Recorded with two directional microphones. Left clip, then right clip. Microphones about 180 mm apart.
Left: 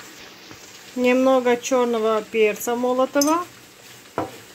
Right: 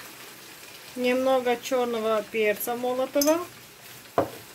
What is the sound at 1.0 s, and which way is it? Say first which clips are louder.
Speech: left 6 dB; 30° left (ahead or behind).